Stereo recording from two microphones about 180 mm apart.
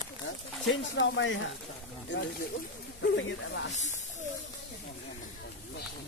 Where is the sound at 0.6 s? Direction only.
90° left.